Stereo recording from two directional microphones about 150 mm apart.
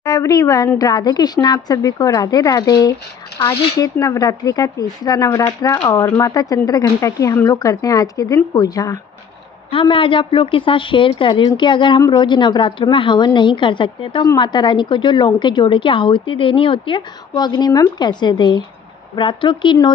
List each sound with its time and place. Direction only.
0.0 s a woman's voice: 25° left (ahead or behind)
9.7 s a woman's voice: 35° left (ahead or behind)